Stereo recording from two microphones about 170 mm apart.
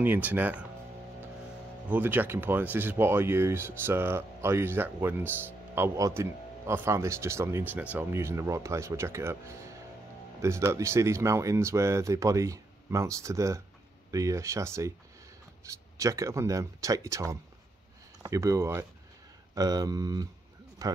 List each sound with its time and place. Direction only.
0.0 s speech: 10° right (ahead or behind)
1.9 s speech: 10° right (ahead or behind)